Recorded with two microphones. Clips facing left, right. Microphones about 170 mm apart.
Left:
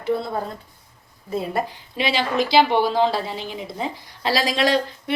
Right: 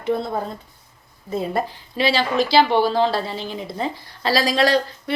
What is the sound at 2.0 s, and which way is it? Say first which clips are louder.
A woman's voice: right 2 dB; 20° left (ahead or behind).